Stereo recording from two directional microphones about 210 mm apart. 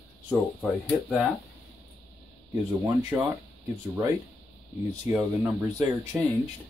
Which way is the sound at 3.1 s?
5° right (ahead or behind).